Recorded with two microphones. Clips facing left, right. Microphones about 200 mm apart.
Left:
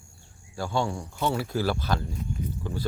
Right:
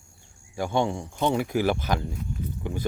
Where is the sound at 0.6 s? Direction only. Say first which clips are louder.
Right 3 dB; 20° right (ahead or behind).